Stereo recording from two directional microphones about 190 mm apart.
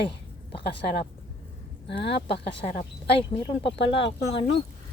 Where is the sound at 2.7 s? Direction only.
45° left (ahead or behind).